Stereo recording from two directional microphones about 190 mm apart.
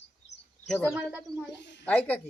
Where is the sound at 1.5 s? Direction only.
65° left (ahead or behind).